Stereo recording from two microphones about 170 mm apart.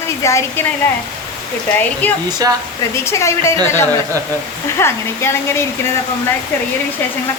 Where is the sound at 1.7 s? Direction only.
10° left (ahead or behind).